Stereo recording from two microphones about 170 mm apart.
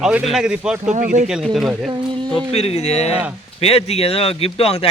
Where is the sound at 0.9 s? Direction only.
50° right (ahead or behind).